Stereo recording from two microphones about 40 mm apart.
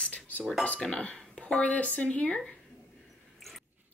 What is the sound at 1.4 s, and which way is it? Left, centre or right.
A woman's voice, left.